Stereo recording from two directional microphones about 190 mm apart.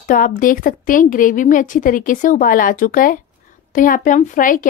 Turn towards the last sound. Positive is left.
turn(degrees=45)  # may be behind; listen again after turning